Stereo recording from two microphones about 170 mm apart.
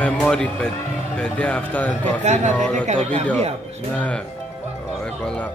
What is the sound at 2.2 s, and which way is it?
Speech, 40° right (ahead or behind).